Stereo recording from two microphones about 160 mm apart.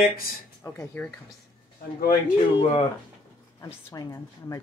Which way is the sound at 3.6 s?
20° left (ahead or behind).